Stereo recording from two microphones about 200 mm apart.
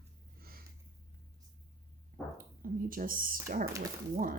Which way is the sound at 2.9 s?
45° right (ahead or behind).